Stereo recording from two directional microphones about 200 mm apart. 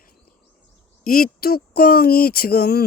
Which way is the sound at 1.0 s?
45° left (ahead or behind).